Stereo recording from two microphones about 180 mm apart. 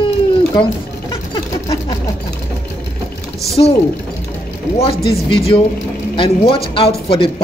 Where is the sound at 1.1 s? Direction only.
30° left (ahead or behind).